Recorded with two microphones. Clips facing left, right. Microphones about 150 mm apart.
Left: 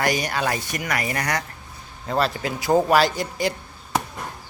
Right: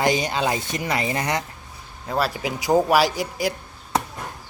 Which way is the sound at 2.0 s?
5° right (ahead or behind).